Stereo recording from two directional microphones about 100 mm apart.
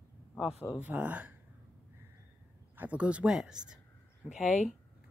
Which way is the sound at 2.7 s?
15° right (ahead or behind).